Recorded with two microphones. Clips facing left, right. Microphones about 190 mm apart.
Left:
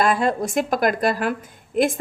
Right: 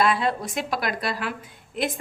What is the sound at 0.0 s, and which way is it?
Speech, 45° left (ahead or behind).